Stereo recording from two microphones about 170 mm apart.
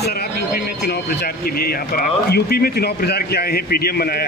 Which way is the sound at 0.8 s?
65° left (ahead or behind).